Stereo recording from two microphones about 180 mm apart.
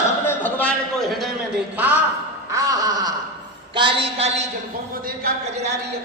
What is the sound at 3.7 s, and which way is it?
Speech, 30° right (ahead or behind).